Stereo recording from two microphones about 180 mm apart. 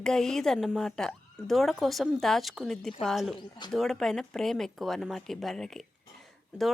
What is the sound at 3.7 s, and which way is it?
Speech, centre (ahead or behind).